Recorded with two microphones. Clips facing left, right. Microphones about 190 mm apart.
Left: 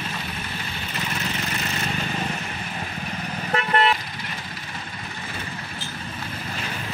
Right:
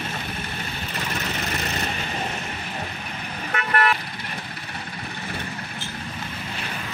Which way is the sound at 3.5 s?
25° left (ahead or behind).